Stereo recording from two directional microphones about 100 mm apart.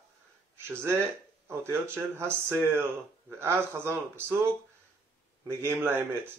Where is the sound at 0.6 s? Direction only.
25° right (ahead or behind).